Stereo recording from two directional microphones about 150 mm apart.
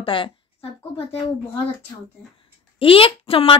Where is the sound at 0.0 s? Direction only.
35° left (ahead or behind).